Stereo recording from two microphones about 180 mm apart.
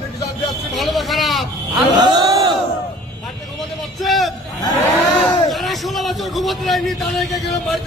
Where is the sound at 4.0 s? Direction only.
Centre (ahead or behind).